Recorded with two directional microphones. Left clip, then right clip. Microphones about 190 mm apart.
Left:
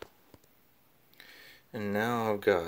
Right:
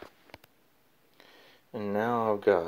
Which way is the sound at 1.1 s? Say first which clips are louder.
Left 3 dB; 5° left (ahead or behind).